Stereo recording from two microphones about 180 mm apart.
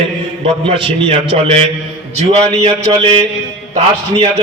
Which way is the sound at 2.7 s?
20° right (ahead or behind).